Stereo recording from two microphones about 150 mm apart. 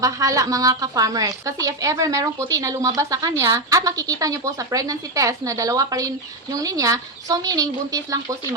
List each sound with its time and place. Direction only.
0.0 s a woman's voice: 20° right (ahead or behind)